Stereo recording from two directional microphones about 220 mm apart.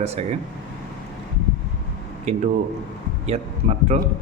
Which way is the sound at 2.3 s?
30° right (ahead or behind).